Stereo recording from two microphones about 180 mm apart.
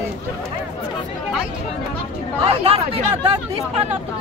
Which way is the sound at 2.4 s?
35° right (ahead or behind).